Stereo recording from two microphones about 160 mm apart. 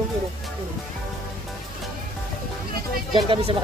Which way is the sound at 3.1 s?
30° right (ahead or behind).